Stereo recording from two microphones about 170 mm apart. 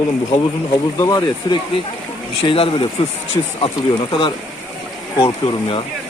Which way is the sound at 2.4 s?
30° left (ahead or behind).